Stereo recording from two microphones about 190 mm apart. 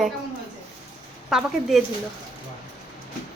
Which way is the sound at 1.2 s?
Centre (ahead or behind).